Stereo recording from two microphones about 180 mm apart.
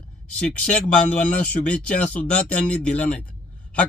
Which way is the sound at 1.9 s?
40° left (ahead or behind).